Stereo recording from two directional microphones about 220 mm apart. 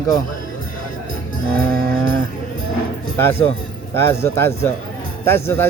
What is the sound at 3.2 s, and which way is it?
Speech, 10° left (ahead or behind).